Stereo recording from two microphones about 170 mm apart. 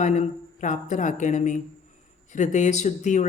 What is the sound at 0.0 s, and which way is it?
A woman's voice, 45° left (ahead or behind).